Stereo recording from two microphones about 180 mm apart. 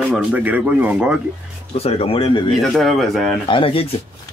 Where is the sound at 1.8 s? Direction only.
35° left (ahead or behind).